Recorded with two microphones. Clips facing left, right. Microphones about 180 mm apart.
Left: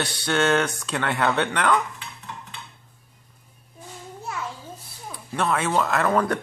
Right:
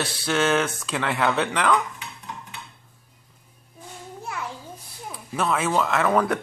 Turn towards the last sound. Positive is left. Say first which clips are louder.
# even
turn(degrees=0)  # may be behind; listen again after turning